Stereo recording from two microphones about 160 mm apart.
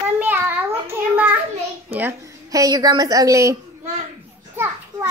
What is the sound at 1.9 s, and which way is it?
A woman's voice, 15° right (ahead or behind).